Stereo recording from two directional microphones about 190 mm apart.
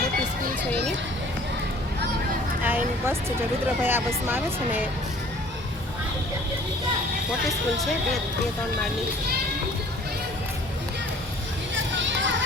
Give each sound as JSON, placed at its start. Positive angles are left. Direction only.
{"t": 2.6, "sound": "speech", "side_deg": -10}
{"t": 11.7, "sound": "children playing", "side_deg": -75}